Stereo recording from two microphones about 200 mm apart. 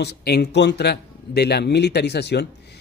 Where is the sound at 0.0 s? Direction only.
55° left (ahead or behind).